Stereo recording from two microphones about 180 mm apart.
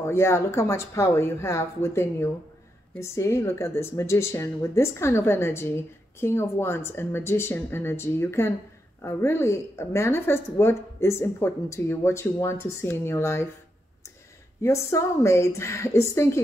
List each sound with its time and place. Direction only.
0.0 s speech: 15° left (ahead or behind)
14.6 s speech: 15° left (ahead or behind)